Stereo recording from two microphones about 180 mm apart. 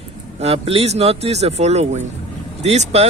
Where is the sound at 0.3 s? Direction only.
35° right (ahead or behind).